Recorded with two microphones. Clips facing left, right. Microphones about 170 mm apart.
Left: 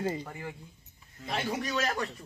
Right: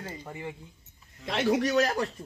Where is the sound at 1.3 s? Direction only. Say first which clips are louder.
Right 7 dB; 85° right.